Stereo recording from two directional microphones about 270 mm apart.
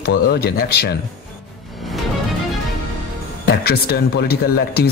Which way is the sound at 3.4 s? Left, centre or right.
Left.